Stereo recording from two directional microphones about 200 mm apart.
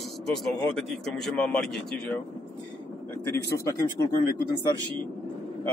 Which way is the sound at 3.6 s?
15° left (ahead or behind).